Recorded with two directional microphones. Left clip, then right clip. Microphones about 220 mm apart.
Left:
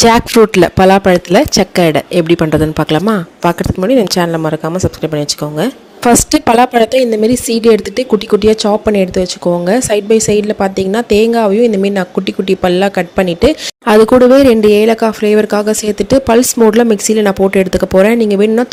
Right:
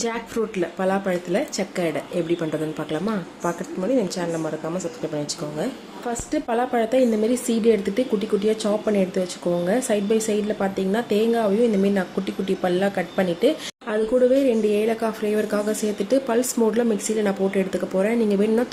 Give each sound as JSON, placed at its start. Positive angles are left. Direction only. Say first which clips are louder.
{"t": 0.0, "sound": "a woman's voice", "louder": "left 19 dB", "side_deg": 45}